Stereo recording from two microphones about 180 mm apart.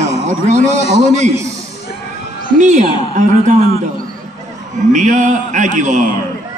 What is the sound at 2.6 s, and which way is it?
Speech, 40° right (ahead or behind).